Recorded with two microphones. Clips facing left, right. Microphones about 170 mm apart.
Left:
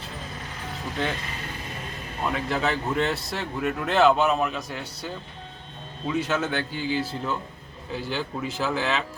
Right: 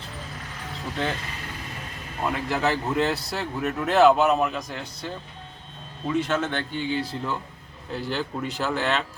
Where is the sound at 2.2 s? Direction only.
5° right (ahead or behind).